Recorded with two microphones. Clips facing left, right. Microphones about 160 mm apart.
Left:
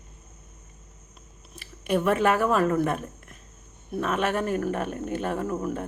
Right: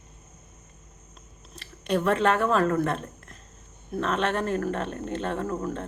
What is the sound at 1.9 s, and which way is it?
A woman's voice, 10° left (ahead or behind).